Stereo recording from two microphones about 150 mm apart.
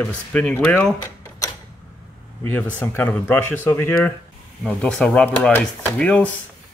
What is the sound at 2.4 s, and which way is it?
Speech, 15° left (ahead or behind).